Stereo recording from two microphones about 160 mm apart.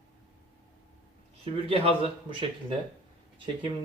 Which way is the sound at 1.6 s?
35° right (ahead or behind).